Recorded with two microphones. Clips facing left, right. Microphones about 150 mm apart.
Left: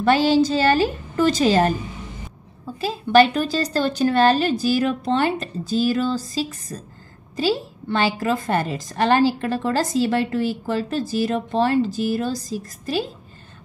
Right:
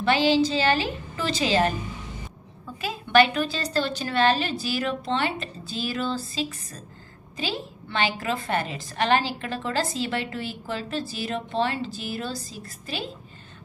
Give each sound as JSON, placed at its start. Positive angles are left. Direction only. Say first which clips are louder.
{"t": 0.0, "sound": "a woman's voice", "louder": "left 4 dB", "side_deg": 45}
{"t": 2.6, "sound": "a woman's voice", "louder": "left 6 dB", "side_deg": 35}